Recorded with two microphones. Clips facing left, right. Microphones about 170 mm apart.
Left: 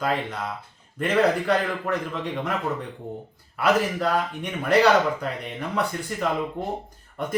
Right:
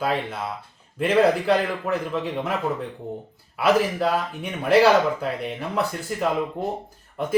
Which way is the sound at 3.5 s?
5° right (ahead or behind).